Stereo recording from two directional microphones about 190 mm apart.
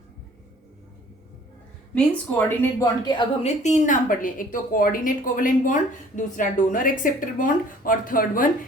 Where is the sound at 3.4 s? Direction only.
35° left (ahead or behind).